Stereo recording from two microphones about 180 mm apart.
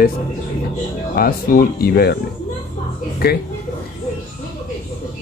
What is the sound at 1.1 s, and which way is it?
A man's voice, 55° left (ahead or behind).